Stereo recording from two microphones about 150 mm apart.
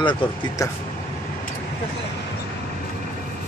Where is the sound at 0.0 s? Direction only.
30° left (ahead or behind).